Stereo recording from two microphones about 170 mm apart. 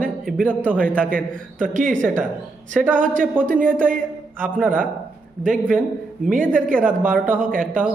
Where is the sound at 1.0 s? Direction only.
55° right (ahead or behind).